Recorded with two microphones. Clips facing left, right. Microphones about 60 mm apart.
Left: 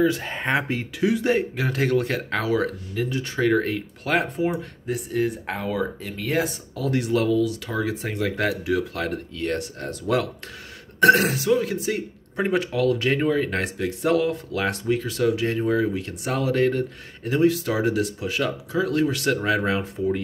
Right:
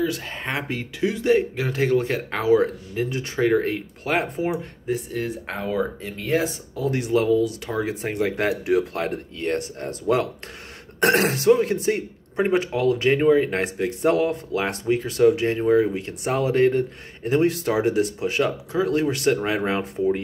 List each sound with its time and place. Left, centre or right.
0.0 s speech: centre
1.6 s speech: centre
4.5 s speech: centre
7.3 s speech: right
12.4 s speech: right